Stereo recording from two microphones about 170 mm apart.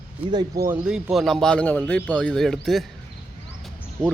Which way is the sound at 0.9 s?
5° right (ahead or behind).